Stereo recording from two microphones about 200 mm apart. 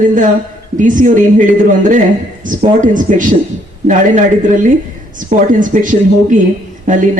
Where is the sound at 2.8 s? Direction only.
40° right (ahead or behind).